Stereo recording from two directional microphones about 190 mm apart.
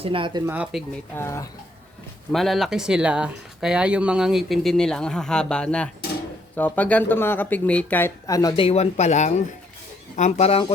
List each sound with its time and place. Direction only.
0.0 s speech: 25° right (ahead or behind)
0.4 s speech: 5° right (ahead or behind)
1.1 s speech: 15° left (ahead or behind)
2.3 s speech: centre (ahead or behind); by 8.6 s 20° left (ahead or behind)
8.6 s speech: 35° left (ahead or behind)